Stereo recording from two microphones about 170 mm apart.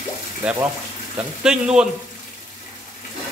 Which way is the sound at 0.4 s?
5° right (ahead or behind).